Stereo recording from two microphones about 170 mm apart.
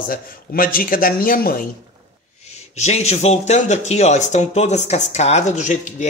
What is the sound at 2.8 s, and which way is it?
A man's voice, 40° left (ahead or behind).